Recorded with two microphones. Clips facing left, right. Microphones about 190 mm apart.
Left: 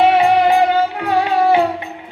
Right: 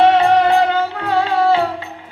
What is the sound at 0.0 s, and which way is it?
Music, 10° left (ahead or behind).